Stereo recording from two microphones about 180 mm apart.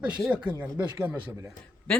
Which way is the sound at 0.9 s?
15° right (ahead or behind).